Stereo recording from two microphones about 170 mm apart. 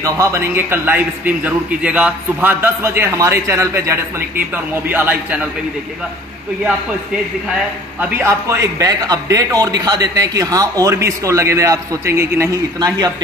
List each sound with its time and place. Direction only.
0.0 s a man's voice: 15° right (ahead or behind)
8.0 s a man's voice: 10° right (ahead or behind)